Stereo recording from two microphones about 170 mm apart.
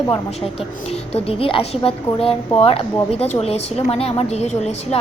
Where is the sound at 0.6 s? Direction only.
35° left (ahead or behind).